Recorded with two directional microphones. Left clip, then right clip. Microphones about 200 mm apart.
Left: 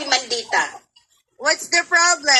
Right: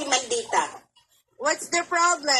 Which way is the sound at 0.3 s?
35° left (ahead or behind).